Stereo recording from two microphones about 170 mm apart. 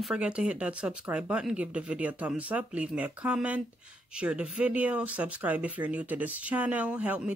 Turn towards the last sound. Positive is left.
turn(degrees=-10)  # may be behind; listen again after turning